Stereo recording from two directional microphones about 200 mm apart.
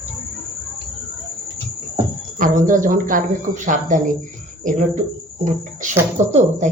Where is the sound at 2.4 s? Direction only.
40° right (ahead or behind).